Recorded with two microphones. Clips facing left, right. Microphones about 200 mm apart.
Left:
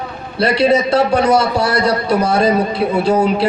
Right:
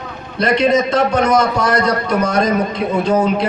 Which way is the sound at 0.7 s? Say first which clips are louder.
Left 1 dB; 35° left (ahead or behind).